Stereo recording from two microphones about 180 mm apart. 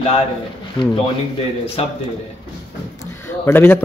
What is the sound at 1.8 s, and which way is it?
Speech, 35° left (ahead or behind).